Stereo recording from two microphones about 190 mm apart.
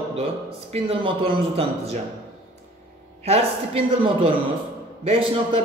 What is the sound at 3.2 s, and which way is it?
A woman's voice, 30° right (ahead or behind).